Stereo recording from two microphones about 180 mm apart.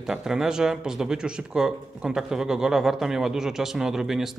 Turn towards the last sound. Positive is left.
turn(degrees=-5)  # may be behind; listen again after turning